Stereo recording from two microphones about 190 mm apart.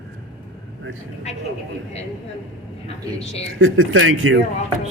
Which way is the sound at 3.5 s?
90° right.